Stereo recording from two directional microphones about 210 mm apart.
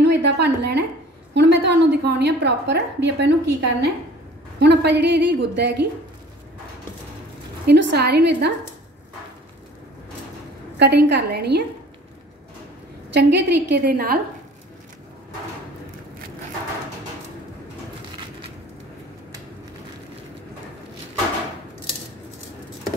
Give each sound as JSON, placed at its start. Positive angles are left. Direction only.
{"t": 0.0, "sound": "a sound", "side_deg": -55}
{"t": 1.3, "sound": "a woman's voice", "side_deg": -55}
{"t": 7.6, "sound": "a woman's voice", "side_deg": -50}
{"t": 10.8, "sound": "a woman's voice", "side_deg": -55}
{"t": 13.1, "sound": "a woman's voice", "side_deg": -55}